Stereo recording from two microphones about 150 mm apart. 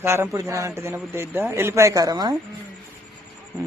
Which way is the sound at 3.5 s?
20° right (ahead or behind).